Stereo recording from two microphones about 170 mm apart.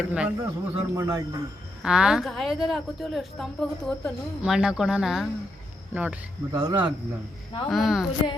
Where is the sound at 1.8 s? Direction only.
5° right (ahead or behind).